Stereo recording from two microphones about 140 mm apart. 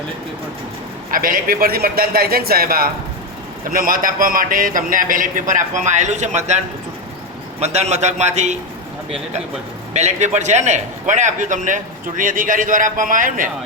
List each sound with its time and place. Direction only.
1.1 s a man's voice: 90° right; by 6.6 s 55° right (ahead or behind)
7.6 s a man's voice: 50° right (ahead or behind)
9.9 s a man's voice: 55° right (ahead or behind); by 13.5 s 75° right (ahead or behind)